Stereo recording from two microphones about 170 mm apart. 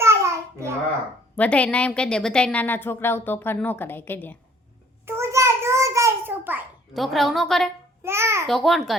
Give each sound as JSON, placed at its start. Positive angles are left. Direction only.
{"t": 0.0, "sound": "babbling", "side_deg": -15}
{"t": 1.4, "sound": "a woman's voice", "side_deg": 10}
{"t": 5.0, "sound": "a sound", "side_deg": -15}
{"t": 6.9, "sound": "a woman's voice", "side_deg": 0}
{"t": 8.0, "sound": "a child's voice", "side_deg": -15}
{"t": 8.4, "sound": "a woman's voice", "side_deg": 0}